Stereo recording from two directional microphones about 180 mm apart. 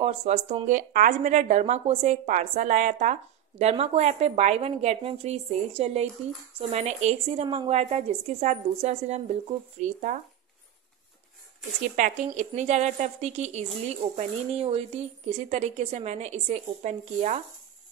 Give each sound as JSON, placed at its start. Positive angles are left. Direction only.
{"t": 0.0, "sound": "speech", "side_deg": -35}
{"t": 12.0, "sound": "speech", "side_deg": -40}